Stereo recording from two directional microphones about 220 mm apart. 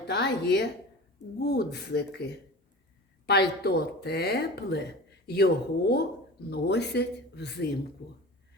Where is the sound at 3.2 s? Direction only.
45° left (ahead or behind).